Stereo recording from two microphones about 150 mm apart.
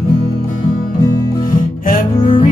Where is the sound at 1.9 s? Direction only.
65° left (ahead or behind).